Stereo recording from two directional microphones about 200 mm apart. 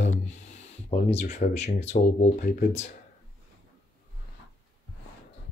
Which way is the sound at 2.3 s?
45° left (ahead or behind).